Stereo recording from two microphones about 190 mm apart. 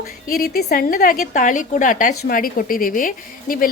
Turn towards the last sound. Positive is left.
turn(degrees=45)  # may be behind; listen again after turning